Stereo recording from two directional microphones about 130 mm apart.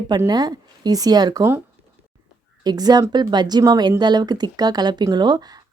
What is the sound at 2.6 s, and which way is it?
Speech, 30° right (ahead or behind).